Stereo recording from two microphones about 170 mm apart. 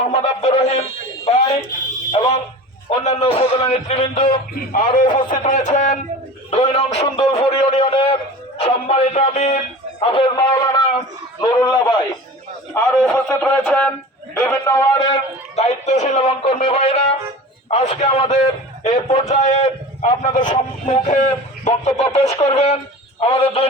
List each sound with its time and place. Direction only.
0.0 s a man's voice: 35° left (ahead or behind)
4.9 s a man's voice: 50° left (ahead or behind); by 11.8 s 25° left (ahead or behind)
12.7 s a man's voice: 5° left (ahead or behind); by 15.2 s 25° left (ahead or behind)
15.5 s a man's voice: 40° left (ahead or behind)